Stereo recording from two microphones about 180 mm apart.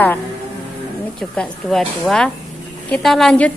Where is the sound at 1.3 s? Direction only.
5° left (ahead or behind).